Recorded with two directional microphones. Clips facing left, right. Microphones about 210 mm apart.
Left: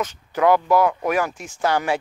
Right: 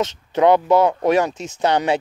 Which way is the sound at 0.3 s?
25° right (ahead or behind).